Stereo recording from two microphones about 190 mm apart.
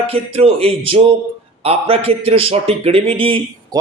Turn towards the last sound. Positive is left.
turn(degrees=-30)  # may be behind; listen again after turning